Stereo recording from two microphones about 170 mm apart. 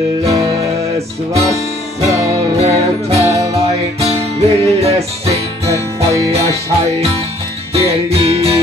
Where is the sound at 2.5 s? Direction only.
40° right (ahead or behind).